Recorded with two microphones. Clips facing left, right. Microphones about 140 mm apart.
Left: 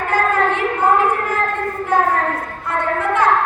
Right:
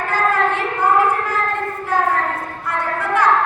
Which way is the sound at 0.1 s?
20° left (ahead or behind).